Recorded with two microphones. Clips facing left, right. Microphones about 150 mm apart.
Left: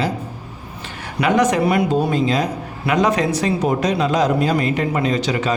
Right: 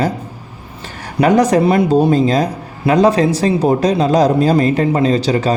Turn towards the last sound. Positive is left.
turn(degrees=-35)  # may be behind; listen again after turning